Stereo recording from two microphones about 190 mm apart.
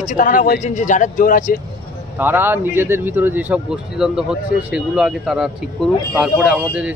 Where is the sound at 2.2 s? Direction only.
10° right (ahead or behind).